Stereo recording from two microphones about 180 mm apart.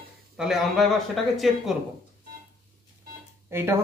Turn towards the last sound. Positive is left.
turn(degrees=-15)  # may be behind; listen again after turning